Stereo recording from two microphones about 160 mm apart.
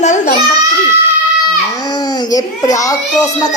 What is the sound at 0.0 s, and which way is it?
Babbling, 50° left (ahead or behind).